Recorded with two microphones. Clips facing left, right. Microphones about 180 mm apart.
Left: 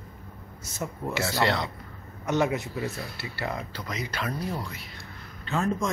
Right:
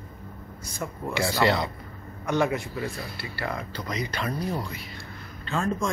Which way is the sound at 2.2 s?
20° left (ahead or behind).